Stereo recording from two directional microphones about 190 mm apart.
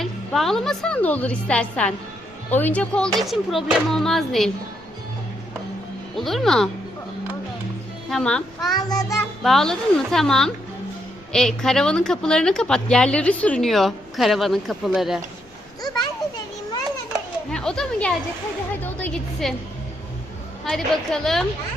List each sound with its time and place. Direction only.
0.0 s a woman's voice: centre (ahead or behind)
6.1 s a woman's voice: centre (ahead or behind)
8.1 s a woman's voice: 5° left (ahead or behind)
8.7 s a child's voice: 20° left (ahead or behind)
9.4 s a woman's voice: centre (ahead or behind)
15.8 s children playing: 20° left (ahead or behind)
17.5 s a woman's voice: 5° left (ahead or behind)
20.7 s a woman's voice: centre (ahead or behind)